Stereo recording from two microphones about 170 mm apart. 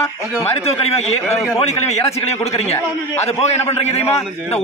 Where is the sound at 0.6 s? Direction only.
35° left (ahead or behind).